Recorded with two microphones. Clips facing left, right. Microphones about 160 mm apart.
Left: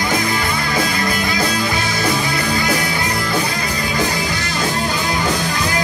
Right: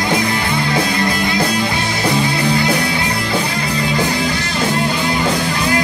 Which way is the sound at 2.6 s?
30° right (ahead or behind).